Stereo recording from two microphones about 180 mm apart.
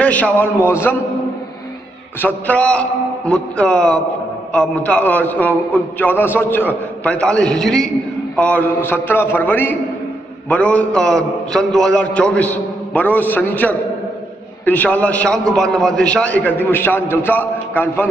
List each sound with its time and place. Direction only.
0.0 s a man's voice: 10° left (ahead or behind)
2.1 s a man's voice: 10° left (ahead or behind)